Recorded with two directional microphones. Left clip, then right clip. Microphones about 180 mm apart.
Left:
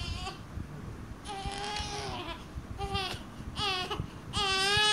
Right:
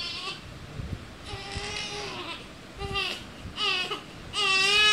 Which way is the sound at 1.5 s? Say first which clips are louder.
Right 3 dB; 25° left (ahead or behind).